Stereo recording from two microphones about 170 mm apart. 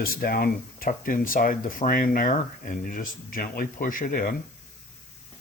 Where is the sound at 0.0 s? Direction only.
60° left (ahead or behind).